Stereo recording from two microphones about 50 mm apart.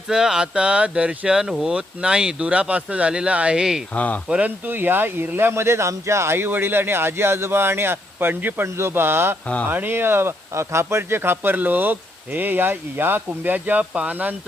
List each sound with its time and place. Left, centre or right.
0.1 s speech: centre
1.4 s speech: centre
3.9 s speech: left
4.3 s speech: right
4.6 s speech: right
8.6 s speech: right
9.6 s speech: right